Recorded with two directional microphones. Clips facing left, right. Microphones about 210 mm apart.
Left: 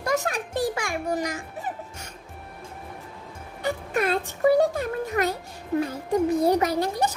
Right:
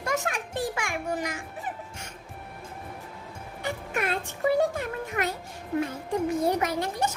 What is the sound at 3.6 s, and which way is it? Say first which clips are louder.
Music: left 5 dB; 35° left (ahead or behind).